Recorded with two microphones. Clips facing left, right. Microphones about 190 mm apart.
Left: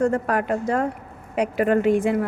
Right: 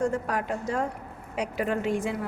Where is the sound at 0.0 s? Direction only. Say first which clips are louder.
Left 6 dB; 60° left (ahead or behind).